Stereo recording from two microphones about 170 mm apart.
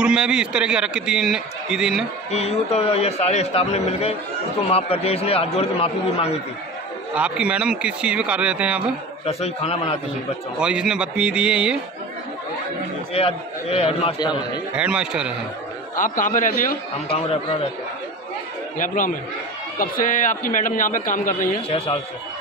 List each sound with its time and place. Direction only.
0.0 s a man's voice: 5° right (ahead or behind)
2.3 s a man's voice: 40° left (ahead or behind)
7.2 s a man's voice: 5° right (ahead or behind)
9.2 s a man's voice: 35° left (ahead or behind)
10.6 s a man's voice: 5° right (ahead or behind)
13.1 s a man's voice: 35° left (ahead or behind)
14.8 s a man's voice: 5° right (ahead or behind)
16.0 s a man's voice: 50° left (ahead or behind)
17.1 s a man's voice: 35° left (ahead or behind)
18.8 s a man's voice: 50° left (ahead or behind)
21.6 s a man's voice: 35° left (ahead or behind)